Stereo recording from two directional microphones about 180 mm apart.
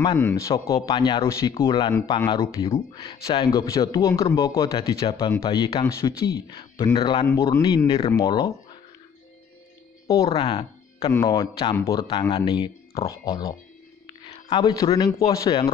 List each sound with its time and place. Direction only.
0.2 s speech: 15° left (ahead or behind)
1.7 s speech: 25° left (ahead or behind)
7.2 s speech: 15° left (ahead or behind)
10.0 s speech: 20° left (ahead or behind)
11.1 s speech: 20° left (ahead or behind)